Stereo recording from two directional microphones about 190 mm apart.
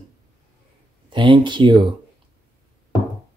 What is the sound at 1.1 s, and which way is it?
Speech, 25° right (ahead or behind).